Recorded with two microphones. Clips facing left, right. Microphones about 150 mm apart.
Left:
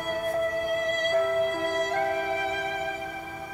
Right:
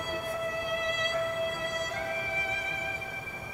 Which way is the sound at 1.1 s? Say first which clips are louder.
Left 9 dB; 50° left (ahead or behind).